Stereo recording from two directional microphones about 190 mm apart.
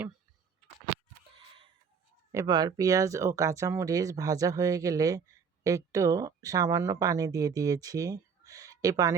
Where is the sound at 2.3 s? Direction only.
20° right (ahead or behind).